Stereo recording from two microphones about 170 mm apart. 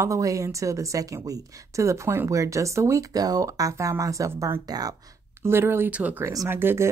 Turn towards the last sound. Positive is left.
turn(degrees=-15)  # may be behind; listen again after turning